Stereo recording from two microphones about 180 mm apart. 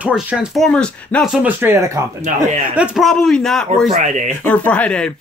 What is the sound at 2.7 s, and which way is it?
Speech, 5° right (ahead or behind).